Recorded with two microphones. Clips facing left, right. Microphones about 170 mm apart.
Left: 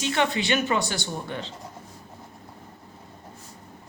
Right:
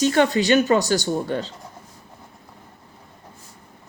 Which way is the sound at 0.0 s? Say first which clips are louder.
Right 7 dB; 40° right (ahead or behind).